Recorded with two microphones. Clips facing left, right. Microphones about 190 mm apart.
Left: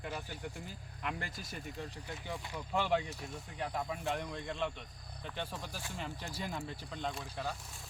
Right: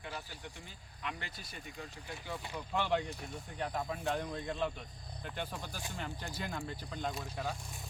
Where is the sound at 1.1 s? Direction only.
45° left (ahead or behind).